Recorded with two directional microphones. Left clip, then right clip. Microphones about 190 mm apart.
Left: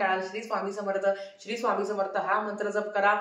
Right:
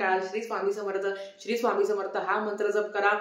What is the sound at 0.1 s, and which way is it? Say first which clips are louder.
Speech: right 1 dB; 15° right (ahead or behind).